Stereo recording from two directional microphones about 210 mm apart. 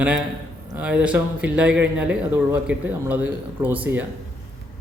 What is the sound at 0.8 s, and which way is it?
Speech, 5° right (ahead or behind).